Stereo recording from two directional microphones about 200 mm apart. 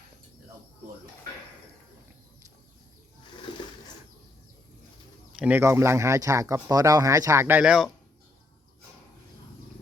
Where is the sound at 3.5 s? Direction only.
25° left (ahead or behind).